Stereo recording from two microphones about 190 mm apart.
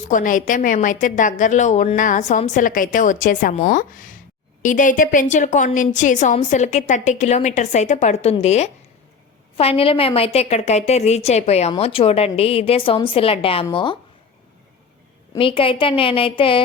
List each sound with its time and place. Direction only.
0.1 s a woman's voice: 45° left (ahead or behind); by 13.9 s 25° left (ahead or behind)
15.4 s a woman's voice: 30° left (ahead or behind)